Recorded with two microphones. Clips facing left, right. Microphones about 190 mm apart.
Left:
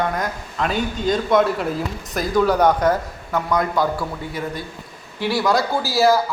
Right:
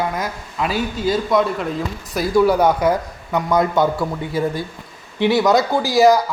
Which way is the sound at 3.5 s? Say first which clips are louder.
Right 4 dB; 25° right (ahead or behind).